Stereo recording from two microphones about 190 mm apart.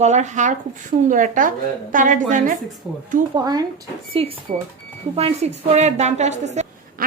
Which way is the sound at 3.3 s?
20° right (ahead or behind).